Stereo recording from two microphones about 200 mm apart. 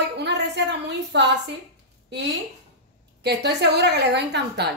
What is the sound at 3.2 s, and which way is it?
A woman's voice, 55° right (ahead or behind).